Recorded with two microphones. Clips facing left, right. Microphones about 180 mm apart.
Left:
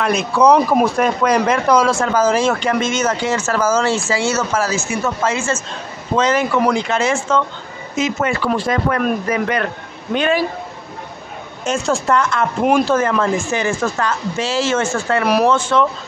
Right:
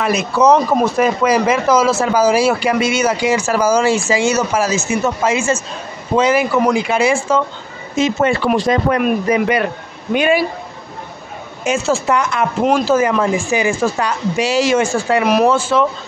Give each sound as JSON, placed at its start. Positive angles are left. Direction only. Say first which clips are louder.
{"t": 0.0, "sound": "speech", "louder": "even", "side_deg": -5}
{"t": 7.9, "sound": "speech", "louder": "right 4 dB", "side_deg": -30}
{"t": 9.0, "sound": "speech", "louder": "right 3 dB", "side_deg": -10}
{"t": 11.6, "sound": "speech", "louder": "right 2 dB", "side_deg": -5}